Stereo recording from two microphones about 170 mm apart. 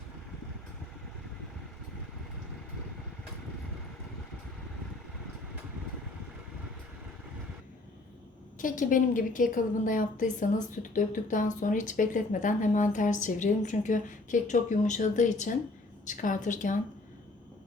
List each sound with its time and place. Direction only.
8.5 s speech: 50° left (ahead or behind)